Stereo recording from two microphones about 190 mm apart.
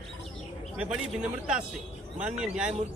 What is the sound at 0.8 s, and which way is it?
A man's voice, 5° right (ahead or behind).